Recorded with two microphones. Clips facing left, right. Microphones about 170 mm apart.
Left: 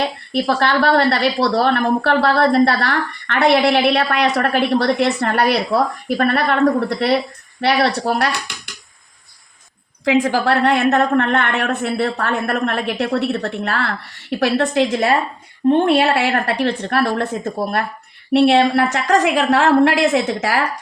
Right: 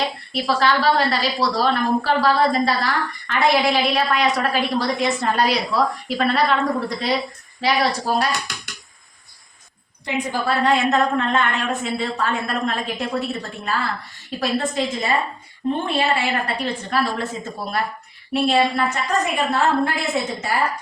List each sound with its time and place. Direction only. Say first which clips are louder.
0.4 s a woman's voice: left 1 dB; 60° left (ahead or behind)
10.0 s a woman's voice: left 8 dB; 90° left; by 17.8 s 55° left (ahead or behind)
18.3 s a woman's voice: left 6 dB; 75° left (ahead or behind)